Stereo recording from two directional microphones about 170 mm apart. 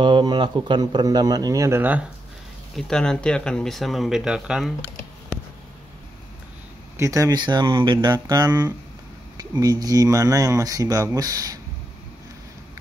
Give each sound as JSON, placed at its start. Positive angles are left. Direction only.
{"t": 0.0, "sound": "speech", "side_deg": -25}
{"t": 2.7, "sound": "speech", "side_deg": 5}
{"t": 7.0, "sound": "speech", "side_deg": -20}